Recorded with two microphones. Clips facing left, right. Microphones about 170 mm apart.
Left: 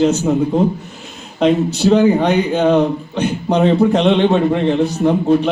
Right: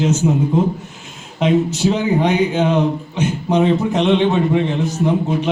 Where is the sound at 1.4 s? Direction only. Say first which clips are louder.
Left 2 dB; 60° left (ahead or behind).